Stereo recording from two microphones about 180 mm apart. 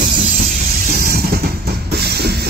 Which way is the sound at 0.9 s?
55° right (ahead or behind).